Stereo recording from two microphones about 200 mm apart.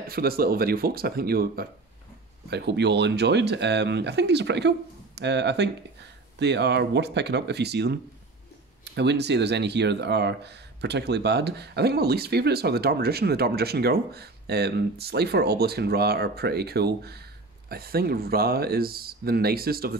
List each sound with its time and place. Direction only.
0.1 s speech: 50° right (ahead or behind)